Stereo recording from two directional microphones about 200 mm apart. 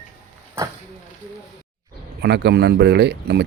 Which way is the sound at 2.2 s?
55° right (ahead or behind).